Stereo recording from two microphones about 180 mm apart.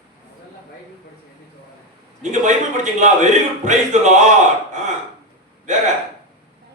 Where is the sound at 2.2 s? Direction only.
40° right (ahead or behind).